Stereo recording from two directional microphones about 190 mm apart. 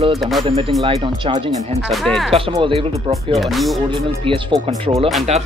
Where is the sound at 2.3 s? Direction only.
30° right (ahead or behind).